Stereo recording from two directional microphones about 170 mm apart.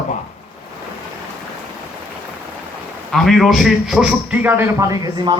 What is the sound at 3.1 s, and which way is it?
A man's voice, centre (ahead or behind).